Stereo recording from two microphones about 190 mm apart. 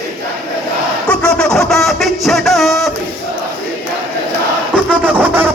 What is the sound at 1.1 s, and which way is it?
Music, 5° left (ahead or behind).